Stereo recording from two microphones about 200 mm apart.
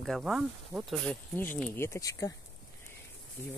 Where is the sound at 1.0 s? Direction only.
10° left (ahead or behind).